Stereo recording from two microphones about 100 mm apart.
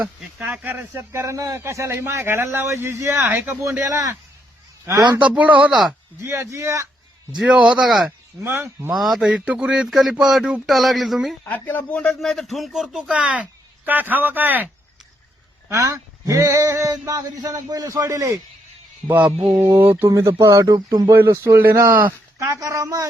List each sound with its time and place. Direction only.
0.0 s speech: 15° right (ahead or behind); by 4.2 s 30° right (ahead or behind)
5.2 s speech: 15° right (ahead or behind)
6.2 s speech: 30° right (ahead or behind)
7.3 s speech: 10° right (ahead or behind)
8.4 s speech: 25° right (ahead or behind)
8.9 s speech: centre (ahead or behind)
11.4 s speech: 15° left (ahead or behind); by 14.7 s 20° right (ahead or behind)
15.7 s speech: 30° right (ahead or behind)
19.0 s speech: 15° right (ahead or behind)
19.8 s speech: 20° right (ahead or behind)
22.6 s speech: 30° right (ahead or behind)